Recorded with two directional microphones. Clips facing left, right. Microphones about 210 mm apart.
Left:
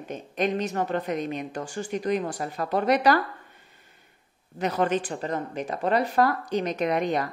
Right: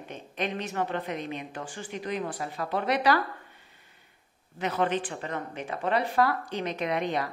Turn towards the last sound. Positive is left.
turn(degrees=45)  # may be behind; listen again after turning